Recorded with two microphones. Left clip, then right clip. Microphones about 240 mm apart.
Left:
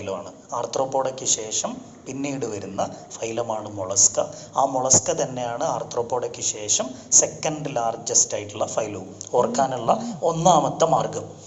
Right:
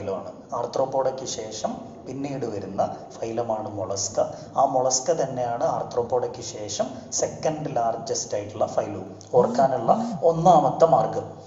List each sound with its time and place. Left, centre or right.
0.0 s a man's voice: left